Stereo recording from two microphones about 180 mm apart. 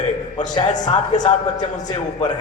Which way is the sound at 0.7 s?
45° left (ahead or behind).